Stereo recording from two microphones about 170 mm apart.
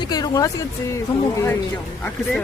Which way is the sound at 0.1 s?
20° left (ahead or behind).